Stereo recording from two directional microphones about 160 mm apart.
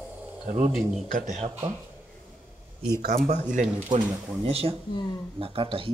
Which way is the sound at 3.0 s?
65° right (ahead or behind).